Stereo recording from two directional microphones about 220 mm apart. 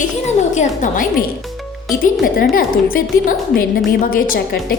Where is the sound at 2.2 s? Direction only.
40° left (ahead or behind).